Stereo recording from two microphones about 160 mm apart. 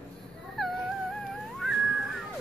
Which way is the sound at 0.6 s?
Centre (ahead or behind).